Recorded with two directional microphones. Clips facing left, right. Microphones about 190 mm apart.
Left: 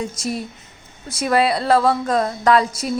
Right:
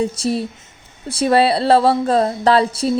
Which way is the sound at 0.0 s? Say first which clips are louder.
Right 6 dB; 30° right (ahead or behind).